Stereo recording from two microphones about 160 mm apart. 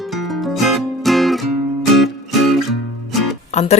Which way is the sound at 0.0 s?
Centre (ahead or behind).